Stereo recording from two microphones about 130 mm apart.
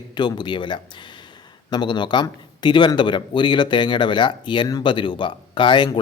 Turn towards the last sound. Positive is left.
turn(degrees=40)  # may be behind; listen again after turning